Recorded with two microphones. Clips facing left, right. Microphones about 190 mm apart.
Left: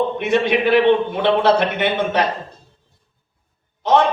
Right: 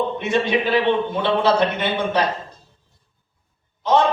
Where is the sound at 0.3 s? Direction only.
60° left (ahead or behind).